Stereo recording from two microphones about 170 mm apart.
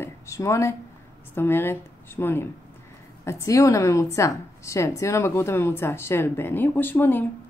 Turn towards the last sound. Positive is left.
turn(degrees=10)  # may be behind; listen again after turning